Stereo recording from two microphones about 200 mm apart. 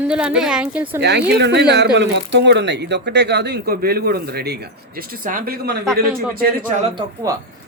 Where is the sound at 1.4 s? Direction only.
55° right (ahead or behind).